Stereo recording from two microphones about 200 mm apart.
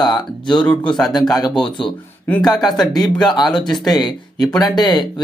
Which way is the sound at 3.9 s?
20° left (ahead or behind).